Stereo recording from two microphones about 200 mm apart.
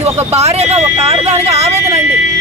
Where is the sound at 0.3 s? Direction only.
30° right (ahead or behind).